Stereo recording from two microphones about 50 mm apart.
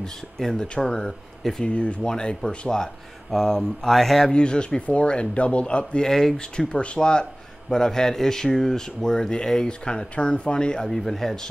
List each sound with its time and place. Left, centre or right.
0.0 s speech: centre
1.6 s speech: left; by 4.3 s centre
4.3 s speech: centre
6.0 s speech: centre